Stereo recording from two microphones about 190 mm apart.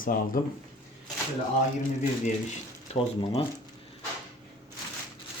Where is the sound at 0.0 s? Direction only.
50° left (ahead or behind).